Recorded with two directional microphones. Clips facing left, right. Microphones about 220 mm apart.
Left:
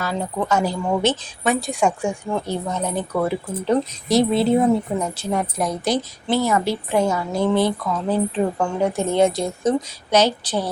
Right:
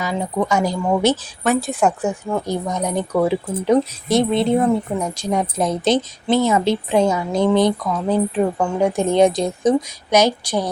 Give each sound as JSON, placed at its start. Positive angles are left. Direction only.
{"t": 0.0, "sound": "a woman's voice", "side_deg": -15}
{"t": 4.1, "sound": "speech", "side_deg": 0}
{"t": 4.9, "sound": "a woman's voice", "side_deg": -10}